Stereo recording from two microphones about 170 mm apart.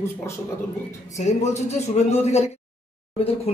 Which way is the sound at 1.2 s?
45° left (ahead or behind).